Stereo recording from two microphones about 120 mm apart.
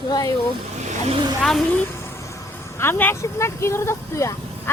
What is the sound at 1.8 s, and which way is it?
Speech, 20° left (ahead or behind).